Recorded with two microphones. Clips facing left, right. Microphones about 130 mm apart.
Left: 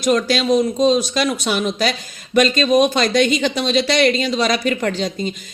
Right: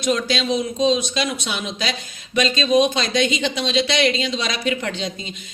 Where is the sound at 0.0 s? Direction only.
50° left (ahead or behind).